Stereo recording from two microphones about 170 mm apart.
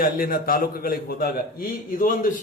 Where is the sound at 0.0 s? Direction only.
60° left (ahead or behind).